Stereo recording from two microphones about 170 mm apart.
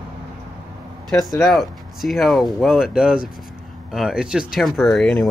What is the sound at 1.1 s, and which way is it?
Speech, centre (ahead or behind).